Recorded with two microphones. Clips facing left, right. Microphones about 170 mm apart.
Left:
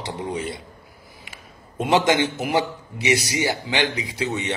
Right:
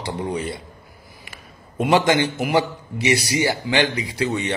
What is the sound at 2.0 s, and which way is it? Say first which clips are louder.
A man's voice: right 1 dB; 15° left (ahead or behind).